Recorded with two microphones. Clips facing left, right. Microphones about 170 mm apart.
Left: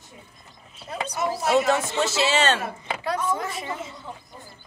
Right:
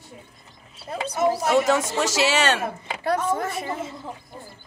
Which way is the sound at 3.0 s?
55° right (ahead or behind).